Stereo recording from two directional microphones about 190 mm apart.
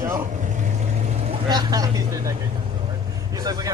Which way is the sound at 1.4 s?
20° right (ahead or behind).